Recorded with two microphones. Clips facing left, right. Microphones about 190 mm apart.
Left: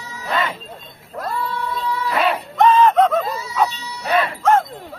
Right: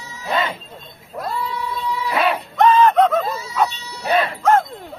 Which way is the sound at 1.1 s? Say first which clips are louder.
Even; 10° right (ahead or behind).